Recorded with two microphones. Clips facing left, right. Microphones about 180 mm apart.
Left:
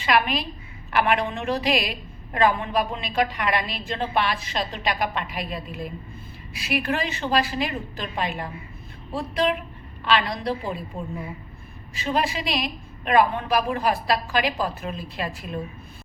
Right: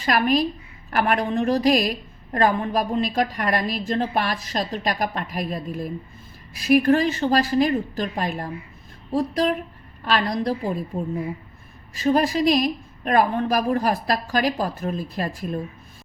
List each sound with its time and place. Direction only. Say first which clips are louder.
0.0 s a woman's voice: right 3 dB; 45° right (ahead or behind)
11.9 s a woman's voice: right 6 dB; 40° right (ahead or behind)